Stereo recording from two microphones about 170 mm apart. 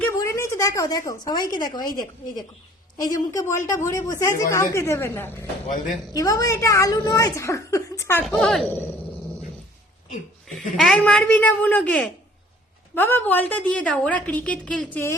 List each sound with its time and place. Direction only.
0.2 s speech: 20° left (ahead or behind)
3.0 s a woman's voice: 20° left (ahead or behind)
5.6 s speech: 50° left (ahead or behind)
6.1 s a woman's voice: 20° left (ahead or behind)
8.4 s a woman's voice: centre (ahead or behind)
10.8 s a woman's voice: 5° left (ahead or behind)